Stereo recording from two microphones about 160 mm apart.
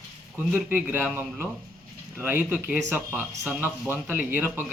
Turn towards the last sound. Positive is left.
turn(degrees=-10)  # may be behind; listen again after turning